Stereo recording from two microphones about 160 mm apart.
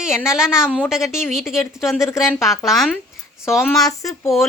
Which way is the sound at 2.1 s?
20° left (ahead or behind).